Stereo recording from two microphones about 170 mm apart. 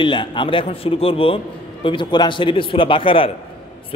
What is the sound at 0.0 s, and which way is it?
A man's voice, 30° left (ahead or behind).